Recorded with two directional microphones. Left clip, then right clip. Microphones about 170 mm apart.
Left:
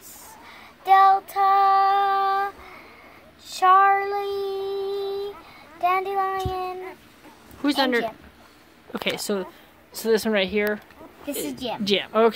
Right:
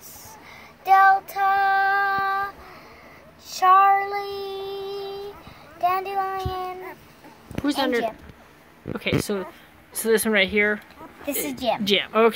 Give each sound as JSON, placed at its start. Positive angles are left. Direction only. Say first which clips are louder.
{"t": 0.8, "sound": "child singing", "louder": "even", "side_deg": -10}
{"t": 3.5, "sound": "child singing", "louder": "right 1 dB", "side_deg": -5}
{"t": 7.6, "sound": "speech", "louder": "left 1 dB", "side_deg": 10}
{"t": 9.9, "sound": "speech", "louder": "right 2 dB", "side_deg": 5}
{"t": 11.8, "sound": "speech", "louder": "left 1 dB", "side_deg": 5}